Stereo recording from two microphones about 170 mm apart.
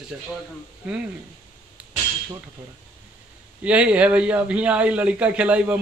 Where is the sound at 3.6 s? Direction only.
5° right (ahead or behind).